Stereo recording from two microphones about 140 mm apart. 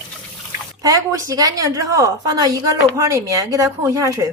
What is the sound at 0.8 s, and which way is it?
A woman's voice, 25° right (ahead or behind).